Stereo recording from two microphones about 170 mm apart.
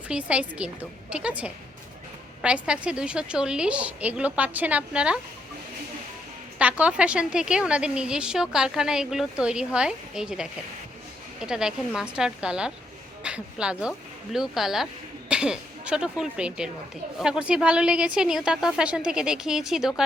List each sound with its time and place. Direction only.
0.1 s a woman's voice: 5° right (ahead or behind)
6.6 s a woman's voice: 10° right (ahead or behind)